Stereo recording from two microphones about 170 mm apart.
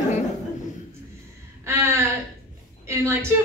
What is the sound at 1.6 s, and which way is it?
A woman's voice, 15° right (ahead or behind).